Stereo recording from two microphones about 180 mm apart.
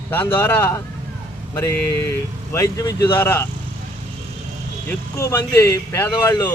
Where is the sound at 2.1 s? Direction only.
15° left (ahead or behind).